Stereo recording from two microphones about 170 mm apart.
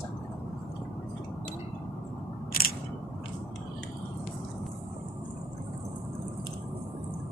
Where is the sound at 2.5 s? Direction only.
60° left (ahead or behind).